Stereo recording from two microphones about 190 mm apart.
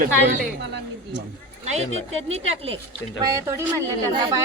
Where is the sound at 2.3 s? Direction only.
35° right (ahead or behind).